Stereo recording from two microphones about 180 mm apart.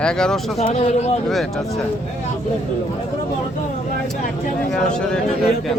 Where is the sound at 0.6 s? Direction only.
35° left (ahead or behind).